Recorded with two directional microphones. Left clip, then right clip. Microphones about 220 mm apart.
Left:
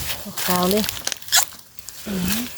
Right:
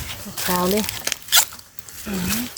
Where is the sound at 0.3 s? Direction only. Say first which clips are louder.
Even; 15° left (ahead or behind).